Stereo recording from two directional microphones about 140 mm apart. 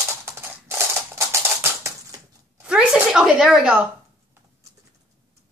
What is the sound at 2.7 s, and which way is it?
A woman's voice, 5° right (ahead or behind).